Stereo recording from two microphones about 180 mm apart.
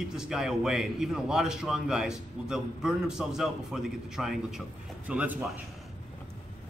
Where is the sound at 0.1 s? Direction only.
5° right (ahead or behind).